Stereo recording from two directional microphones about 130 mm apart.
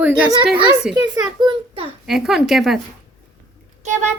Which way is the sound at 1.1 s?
35° right (ahead or behind).